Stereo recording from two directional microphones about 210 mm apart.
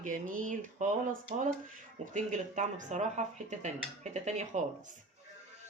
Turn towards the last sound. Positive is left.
turn(degrees=-35)  # may be behind; listen again after turning